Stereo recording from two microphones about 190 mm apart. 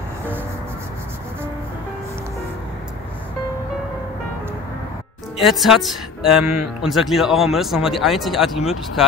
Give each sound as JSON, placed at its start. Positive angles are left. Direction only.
{"t": 5.5, "sound": "speech", "side_deg": 0}